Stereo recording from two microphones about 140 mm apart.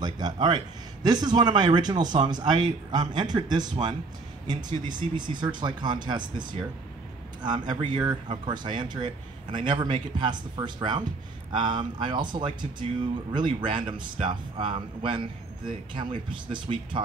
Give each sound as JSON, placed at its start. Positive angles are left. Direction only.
{"t": 0.0, "sound": "speech", "side_deg": -30}